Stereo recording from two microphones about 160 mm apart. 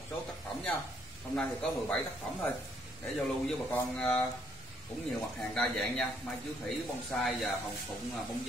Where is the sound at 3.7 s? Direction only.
10° left (ahead or behind).